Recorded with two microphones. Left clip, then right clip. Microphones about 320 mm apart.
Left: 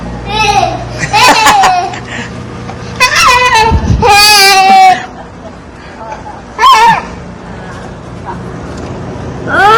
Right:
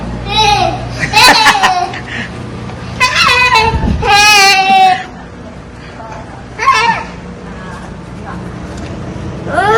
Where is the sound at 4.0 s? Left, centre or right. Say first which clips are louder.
Left 2 dB; left.